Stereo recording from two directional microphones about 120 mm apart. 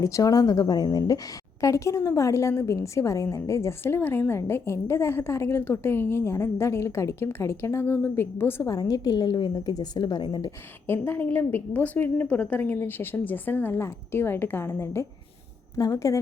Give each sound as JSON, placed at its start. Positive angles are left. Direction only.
{"t": 0.0, "sound": "a woman's voice", "side_deg": 25}
{"t": 10.8, "sound": "a woman's voice", "side_deg": 20}